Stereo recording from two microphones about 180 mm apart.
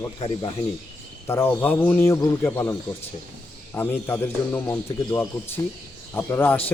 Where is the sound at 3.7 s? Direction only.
10° left (ahead or behind).